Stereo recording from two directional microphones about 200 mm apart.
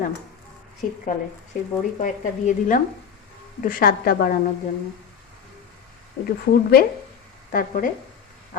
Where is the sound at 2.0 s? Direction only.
40° left (ahead or behind).